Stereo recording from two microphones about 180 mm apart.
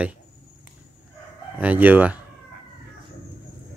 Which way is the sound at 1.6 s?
10° right (ahead or behind).